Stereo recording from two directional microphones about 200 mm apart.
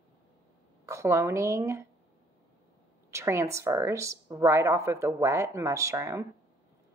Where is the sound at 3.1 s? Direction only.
15° right (ahead or behind).